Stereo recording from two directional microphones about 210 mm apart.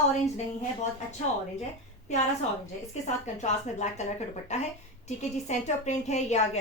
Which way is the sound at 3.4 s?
35° left (ahead or behind).